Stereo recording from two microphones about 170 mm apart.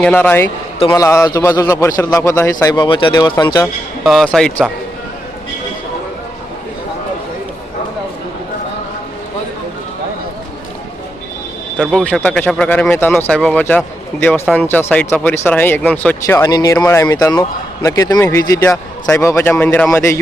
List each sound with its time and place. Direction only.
0.0 s a man's voice: 10° left (ahead or behind)
4.0 s speech: centre (ahead or behind)
11.8 s speech: centre (ahead or behind); by 20.1 s 15° left (ahead or behind)